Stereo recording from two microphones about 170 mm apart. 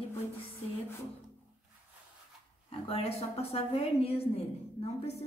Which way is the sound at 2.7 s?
35° left (ahead or behind).